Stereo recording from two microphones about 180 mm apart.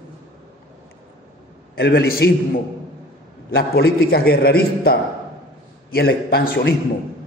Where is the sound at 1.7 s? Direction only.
60° left (ahead or behind).